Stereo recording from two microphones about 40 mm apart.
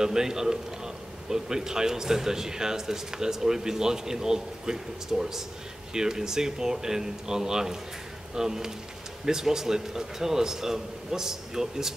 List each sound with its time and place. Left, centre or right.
0.0 s a man's voice: centre